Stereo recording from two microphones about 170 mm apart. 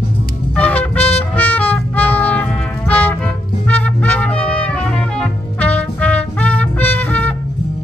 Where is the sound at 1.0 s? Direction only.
35° left (ahead or behind).